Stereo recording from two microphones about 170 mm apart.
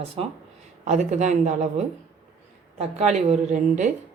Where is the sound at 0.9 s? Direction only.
45° right (ahead or behind).